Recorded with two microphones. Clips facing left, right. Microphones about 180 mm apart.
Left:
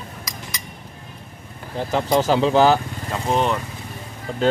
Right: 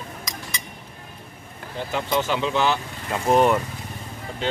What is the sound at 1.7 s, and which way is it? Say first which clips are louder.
Speech: left 5 dB; 40° left (ahead or behind).